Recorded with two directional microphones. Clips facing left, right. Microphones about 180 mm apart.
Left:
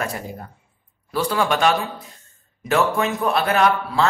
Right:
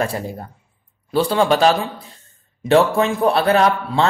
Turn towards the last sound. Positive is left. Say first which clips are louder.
# right 2 dB
turn(degrees=-30)  # may be behind; listen again after turning